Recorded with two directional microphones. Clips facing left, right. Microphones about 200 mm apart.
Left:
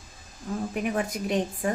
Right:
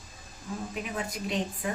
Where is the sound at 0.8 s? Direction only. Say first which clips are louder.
Left 6 dB; 55° left (ahead or behind).